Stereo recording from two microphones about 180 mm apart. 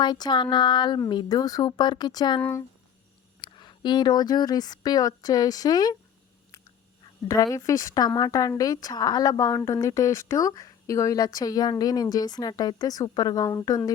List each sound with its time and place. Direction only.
0.0 s speech: 25° left (ahead or behind)
2.4 s speech: 15° left (ahead or behind)
3.4 s speech: 25° left (ahead or behind)
7.0 s speech: 20° left (ahead or behind)